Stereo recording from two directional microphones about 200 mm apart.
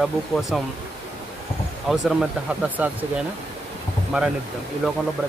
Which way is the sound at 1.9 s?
Centre (ahead or behind).